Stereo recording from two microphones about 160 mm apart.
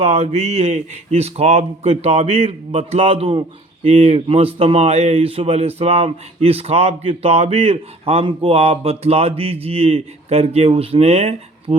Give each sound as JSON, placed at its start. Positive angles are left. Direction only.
{"t": 0.0, "sound": "speech", "side_deg": -40}